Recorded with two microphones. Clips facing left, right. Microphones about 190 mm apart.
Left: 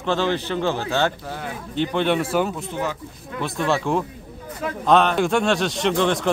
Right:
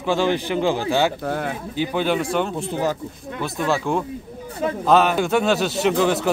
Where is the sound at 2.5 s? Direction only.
30° right (ahead or behind).